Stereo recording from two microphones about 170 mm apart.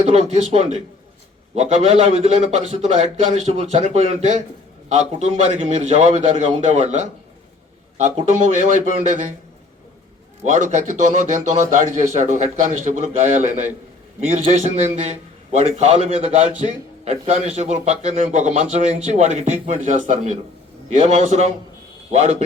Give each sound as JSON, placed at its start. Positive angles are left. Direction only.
{"t": 0.0, "sound": "a man's voice", "side_deg": -40}
{"t": 10.5, "sound": "speech", "side_deg": -50}
{"t": 14.3, "sound": "a man's voice", "side_deg": -45}